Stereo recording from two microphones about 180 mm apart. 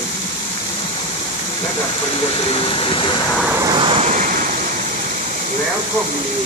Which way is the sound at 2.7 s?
30° left (ahead or behind).